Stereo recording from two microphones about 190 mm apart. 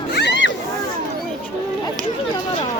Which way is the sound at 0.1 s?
65° left (ahead or behind).